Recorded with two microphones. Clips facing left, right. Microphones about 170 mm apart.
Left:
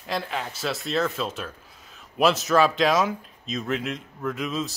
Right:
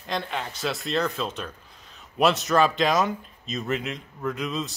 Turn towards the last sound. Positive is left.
turn(degrees=0)  # may be behind; listen again after turning